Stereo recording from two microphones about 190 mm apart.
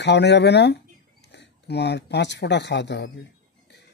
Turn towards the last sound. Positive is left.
turn(degrees=65)  # may be behind; listen again after turning